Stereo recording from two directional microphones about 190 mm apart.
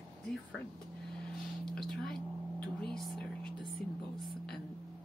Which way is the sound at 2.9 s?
Centre (ahead or behind).